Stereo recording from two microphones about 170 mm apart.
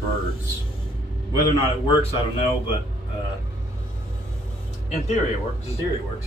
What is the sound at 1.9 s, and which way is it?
Speech, 30° left (ahead or behind).